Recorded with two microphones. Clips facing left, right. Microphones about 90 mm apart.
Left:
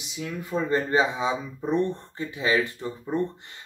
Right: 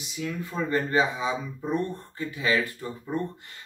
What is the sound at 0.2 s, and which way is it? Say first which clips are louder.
Speech: left 2 dB; 15° left (ahead or behind).